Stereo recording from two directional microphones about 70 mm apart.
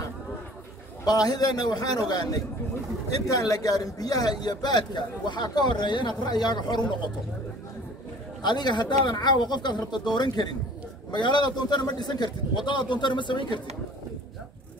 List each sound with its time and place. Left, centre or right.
1.0 s a man's voice: left
8.4 s speech: left